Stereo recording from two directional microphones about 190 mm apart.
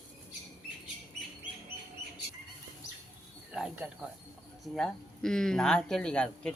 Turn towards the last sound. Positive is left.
turn(degrees=5)  # may be behind; listen again after turning